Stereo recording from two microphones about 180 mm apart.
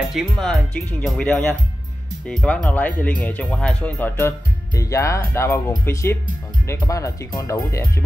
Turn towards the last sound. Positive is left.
turn(degrees=15)  # may be behind; listen again after turning